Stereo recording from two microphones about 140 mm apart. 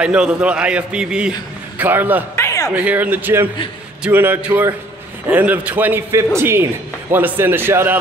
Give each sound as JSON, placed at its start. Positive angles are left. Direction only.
{"t": 0.0, "sound": "a man's voice", "side_deg": -5}
{"t": 2.3, "sound": "a sound", "side_deg": 20}
{"t": 2.7, "sound": "a man's voice", "side_deg": -10}